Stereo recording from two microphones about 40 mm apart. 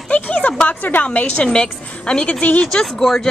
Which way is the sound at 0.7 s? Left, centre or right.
Left.